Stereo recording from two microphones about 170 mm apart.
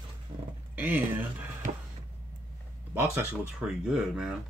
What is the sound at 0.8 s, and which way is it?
Speech, 10° right (ahead or behind).